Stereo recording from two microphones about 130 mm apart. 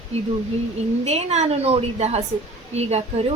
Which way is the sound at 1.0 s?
55° right (ahead or behind).